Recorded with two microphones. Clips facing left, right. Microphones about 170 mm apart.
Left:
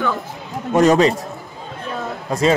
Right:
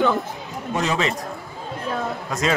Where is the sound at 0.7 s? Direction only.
45° left (ahead or behind).